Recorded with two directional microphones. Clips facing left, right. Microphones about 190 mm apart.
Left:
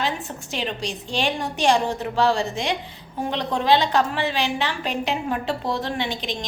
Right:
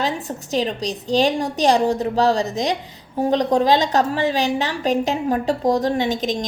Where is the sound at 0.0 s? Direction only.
40° right (ahead or behind).